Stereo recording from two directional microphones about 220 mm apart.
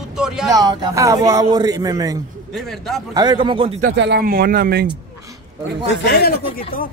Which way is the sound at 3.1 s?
20° right (ahead or behind).